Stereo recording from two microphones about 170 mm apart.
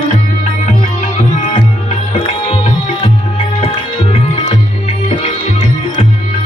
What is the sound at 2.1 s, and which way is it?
Music, 35° left (ahead or behind).